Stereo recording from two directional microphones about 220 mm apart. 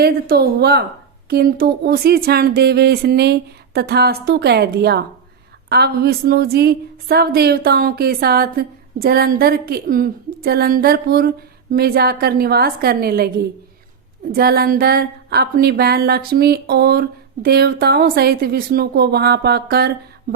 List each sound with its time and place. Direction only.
0.0 s a woman's voice: 45° right (ahead or behind)
14.3 s a woman's voice: 45° right (ahead or behind)